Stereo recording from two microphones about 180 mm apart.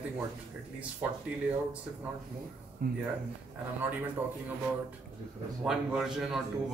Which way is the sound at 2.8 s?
55° right (ahead or behind).